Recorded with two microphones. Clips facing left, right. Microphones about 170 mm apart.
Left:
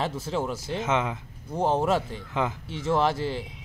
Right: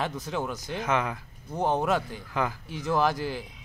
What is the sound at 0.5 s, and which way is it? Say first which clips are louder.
A man's voice: left 2 dB; 25° left (ahead or behind).